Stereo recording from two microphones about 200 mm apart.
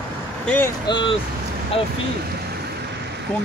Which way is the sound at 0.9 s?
25° left (ahead or behind).